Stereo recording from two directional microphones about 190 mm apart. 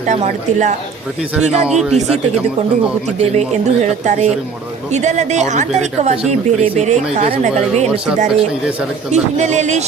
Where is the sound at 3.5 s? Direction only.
40° right (ahead or behind).